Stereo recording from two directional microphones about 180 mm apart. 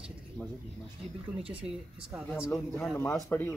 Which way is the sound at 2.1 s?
5° right (ahead or behind).